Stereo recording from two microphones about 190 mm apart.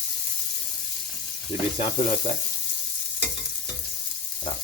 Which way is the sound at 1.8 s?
35° left (ahead or behind).